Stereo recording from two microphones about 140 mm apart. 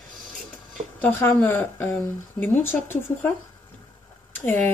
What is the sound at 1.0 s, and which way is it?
Speech, 15° left (ahead or behind).